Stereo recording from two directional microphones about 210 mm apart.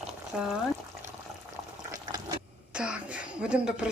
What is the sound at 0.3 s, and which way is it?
Speech, 5° right (ahead or behind).